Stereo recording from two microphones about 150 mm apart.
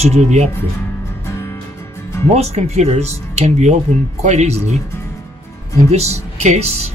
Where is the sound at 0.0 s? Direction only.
50° right (ahead or behind).